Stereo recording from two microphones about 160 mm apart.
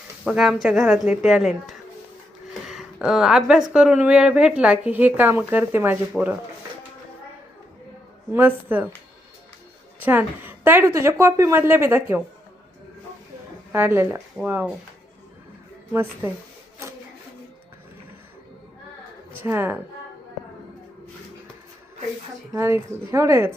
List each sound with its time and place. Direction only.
0.3 s a woman's voice: 5° right (ahead or behind)
8.3 s speech: 10° right (ahead or behind)
10.0 s speech: 10° right (ahead or behind)
13.7 s speech: 15° right (ahead or behind)
15.9 s speech: 15° right (ahead or behind)
19.4 s speech: 15° right (ahead or behind)
22.5 s speech: 15° right (ahead or behind)